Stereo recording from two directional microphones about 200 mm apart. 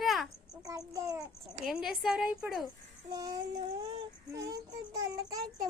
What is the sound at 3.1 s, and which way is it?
Child singing, 20° right (ahead or behind).